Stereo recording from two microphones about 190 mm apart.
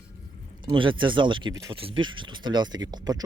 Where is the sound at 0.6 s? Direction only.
25° right (ahead or behind).